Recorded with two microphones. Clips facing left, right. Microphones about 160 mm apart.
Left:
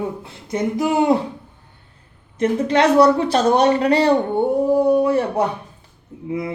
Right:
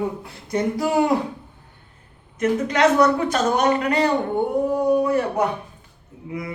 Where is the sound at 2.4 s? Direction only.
30° left (ahead or behind).